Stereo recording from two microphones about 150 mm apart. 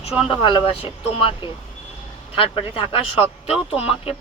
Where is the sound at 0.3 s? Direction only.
35° left (ahead or behind).